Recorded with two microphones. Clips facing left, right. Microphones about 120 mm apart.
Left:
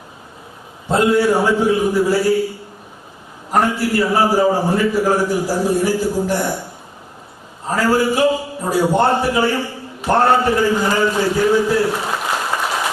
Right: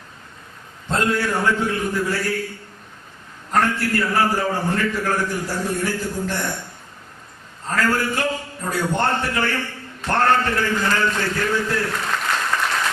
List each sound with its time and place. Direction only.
0.9 s a man's voice: 10° left (ahead or behind)
7.7 s a man's voice: 10° left (ahead or behind)